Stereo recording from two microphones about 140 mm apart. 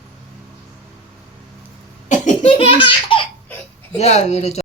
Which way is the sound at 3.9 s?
50° left (ahead or behind).